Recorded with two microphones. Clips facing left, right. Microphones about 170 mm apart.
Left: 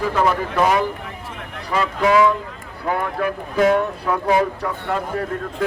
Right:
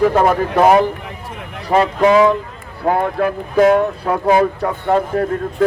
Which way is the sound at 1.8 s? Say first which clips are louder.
Right 4 dB; 35° right (ahead or behind).